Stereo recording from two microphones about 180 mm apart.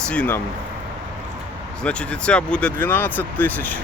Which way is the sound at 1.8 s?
5° left (ahead or behind).